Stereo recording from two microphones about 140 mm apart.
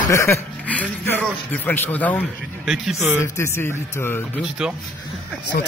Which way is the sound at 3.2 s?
20° left (ahead or behind).